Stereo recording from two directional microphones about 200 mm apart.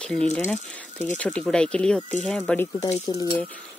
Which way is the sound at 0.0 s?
5° left (ahead or behind).